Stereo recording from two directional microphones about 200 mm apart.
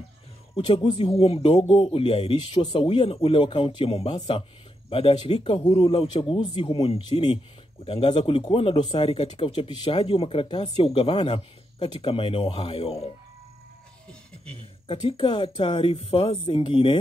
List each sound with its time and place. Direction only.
0.7 s speech: 25° left (ahead or behind)
14.9 s speech: 30° left (ahead or behind)